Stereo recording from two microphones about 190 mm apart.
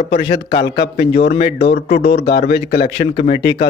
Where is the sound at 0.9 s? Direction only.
35° left (ahead or behind).